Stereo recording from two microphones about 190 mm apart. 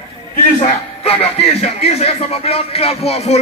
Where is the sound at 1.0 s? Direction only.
30° left (ahead or behind).